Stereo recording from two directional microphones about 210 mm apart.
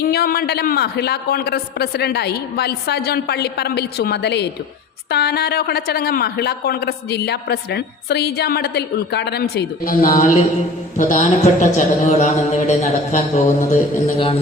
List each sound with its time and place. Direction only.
0.1 s speech: 45° left (ahead or behind)
10.9 s mantra: 35° left (ahead or behind)